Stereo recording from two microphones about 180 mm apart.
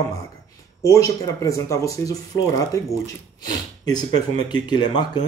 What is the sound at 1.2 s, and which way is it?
Speech, 15° left (ahead or behind).